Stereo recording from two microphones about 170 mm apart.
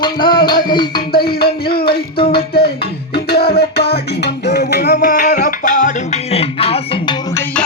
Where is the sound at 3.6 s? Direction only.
70° left (ahead or behind); by 5.9 s 50° left (ahead or behind).